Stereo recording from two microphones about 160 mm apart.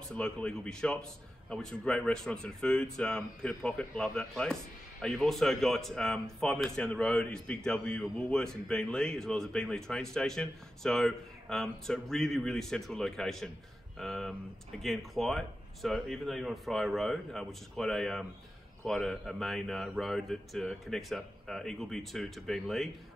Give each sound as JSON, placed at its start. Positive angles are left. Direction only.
{"t": 0.1, "sound": "speech", "side_deg": 5}